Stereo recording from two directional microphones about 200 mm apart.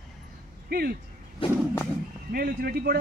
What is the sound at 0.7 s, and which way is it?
Speech, 50° right (ahead or behind).